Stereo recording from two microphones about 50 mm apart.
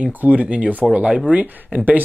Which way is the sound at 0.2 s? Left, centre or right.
Right.